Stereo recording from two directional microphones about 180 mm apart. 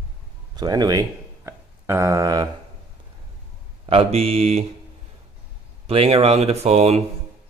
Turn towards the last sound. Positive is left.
turn(degrees=-35)  # may be behind; listen again after turning